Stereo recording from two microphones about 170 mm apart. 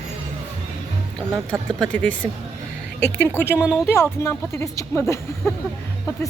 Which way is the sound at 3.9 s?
15° left (ahead or behind).